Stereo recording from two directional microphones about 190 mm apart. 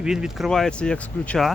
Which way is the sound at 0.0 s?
5° right (ahead or behind).